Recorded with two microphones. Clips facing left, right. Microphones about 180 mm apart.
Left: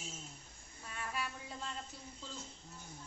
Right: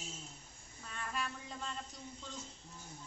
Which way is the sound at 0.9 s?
10° left (ahead or behind).